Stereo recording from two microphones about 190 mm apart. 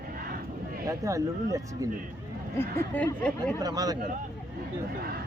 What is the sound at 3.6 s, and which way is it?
Speech, 20° right (ahead or behind).